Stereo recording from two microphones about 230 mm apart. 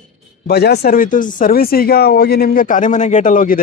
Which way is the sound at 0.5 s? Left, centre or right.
Left.